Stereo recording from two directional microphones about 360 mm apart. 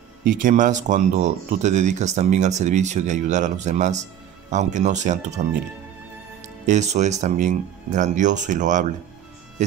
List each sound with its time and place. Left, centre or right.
0.2 s speech: right
6.4 s speech: centre